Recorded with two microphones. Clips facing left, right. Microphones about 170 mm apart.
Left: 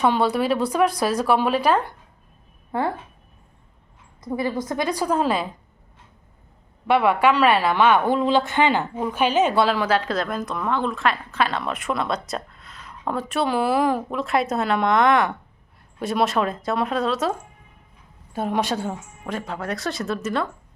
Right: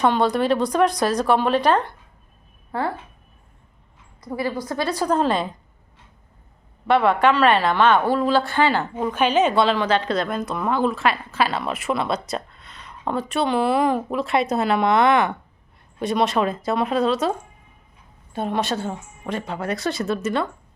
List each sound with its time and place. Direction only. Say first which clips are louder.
0.0 s a woman's voice: right 1 dB; 5° left (ahead or behind)
2.7 s speech: left 1 dB; 20° left (ahead or behind)
4.4 s a woman's voice: even; 20° left (ahead or behind)
6.8 s a woman's voice: right 1 dB; 10° left (ahead or behind)
9.0 s a woman's voice: right 2 dB; 5° left (ahead or behind)
19.2 s a woman's voice: right 2 dB; centre (ahead or behind)